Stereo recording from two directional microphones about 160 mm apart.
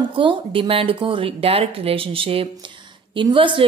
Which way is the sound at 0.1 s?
30° right (ahead or behind).